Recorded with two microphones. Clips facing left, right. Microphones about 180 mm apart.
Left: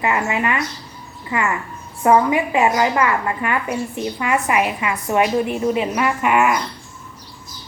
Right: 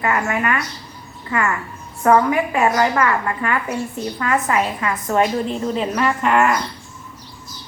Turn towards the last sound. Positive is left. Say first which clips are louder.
# even
turn(degrees=10)  # may be behind; listen again after turning